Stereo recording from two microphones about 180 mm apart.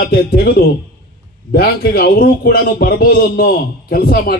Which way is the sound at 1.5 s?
60° left (ahead or behind).